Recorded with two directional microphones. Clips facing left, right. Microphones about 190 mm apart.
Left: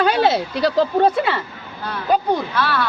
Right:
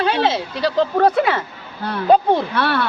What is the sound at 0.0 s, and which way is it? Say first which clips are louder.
Speech: left 2 dB; 40° left (ahead or behind).